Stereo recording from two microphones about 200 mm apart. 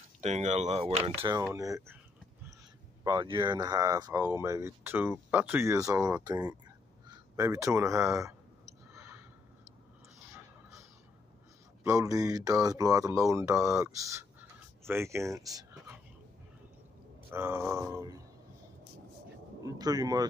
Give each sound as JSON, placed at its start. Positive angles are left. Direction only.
{"t": 0.2, "sound": "a man's voice", "side_deg": -35}
{"t": 1.4, "sound": "speech", "side_deg": -15}
{"t": 3.0, "sound": "speech", "side_deg": -20}
{"t": 8.9, "sound": "a sound", "side_deg": -15}
{"t": 10.3, "sound": "a sound", "side_deg": -15}
{"t": 11.8, "sound": "speech", "side_deg": -15}
{"t": 17.3, "sound": "speech", "side_deg": -15}
{"t": 19.6, "sound": "a man's voice", "side_deg": -20}